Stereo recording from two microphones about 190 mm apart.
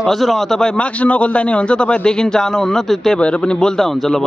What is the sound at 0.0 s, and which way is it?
A man's voice, centre (ahead or behind).